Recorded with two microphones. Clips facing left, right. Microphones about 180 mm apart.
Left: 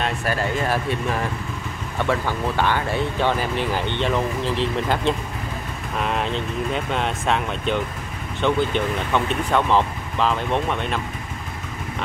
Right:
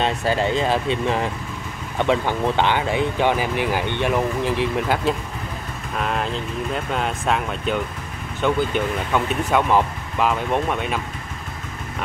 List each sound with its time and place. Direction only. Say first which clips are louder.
0.0 s speech: right 3 dB; 25° right (ahead or behind)